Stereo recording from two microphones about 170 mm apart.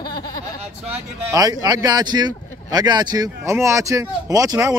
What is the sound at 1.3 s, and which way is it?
Speech, 20° right (ahead or behind).